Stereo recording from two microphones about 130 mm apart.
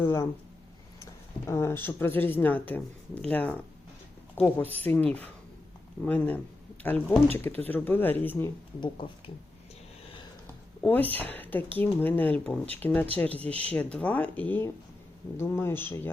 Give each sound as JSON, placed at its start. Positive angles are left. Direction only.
{"t": 0.0, "sound": "speech", "side_deg": 20}
{"t": 1.5, "sound": "speech", "side_deg": 20}
{"t": 8.8, "sound": "speech", "side_deg": 40}
{"t": 10.8, "sound": "speech", "side_deg": 15}
{"t": 13.3, "sound": "speech", "side_deg": -50}
{"t": 13.7, "sound": "speech", "side_deg": 10}